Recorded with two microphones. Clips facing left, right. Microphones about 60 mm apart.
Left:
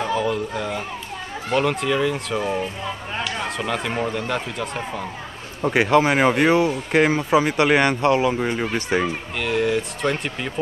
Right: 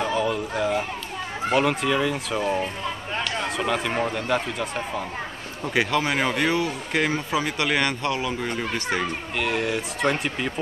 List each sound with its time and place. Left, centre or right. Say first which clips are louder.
0.0 s speech: left 2 dB; centre
5.7 s speech: left 6 dB; left
9.4 s speech: left 4 dB; centre